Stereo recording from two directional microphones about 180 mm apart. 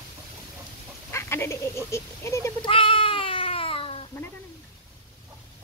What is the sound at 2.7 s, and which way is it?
Cat, 30° left (ahead or behind).